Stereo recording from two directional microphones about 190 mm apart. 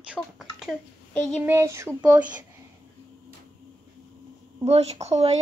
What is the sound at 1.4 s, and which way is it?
Speech, 15° right (ahead or behind).